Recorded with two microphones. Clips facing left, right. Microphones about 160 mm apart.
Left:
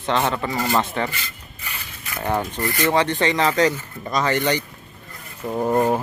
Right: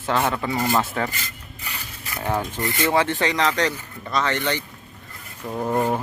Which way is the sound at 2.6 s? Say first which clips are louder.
Left 1 dB; 20° right (ahead or behind).